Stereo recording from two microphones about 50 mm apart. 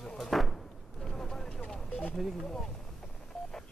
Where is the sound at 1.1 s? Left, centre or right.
Centre.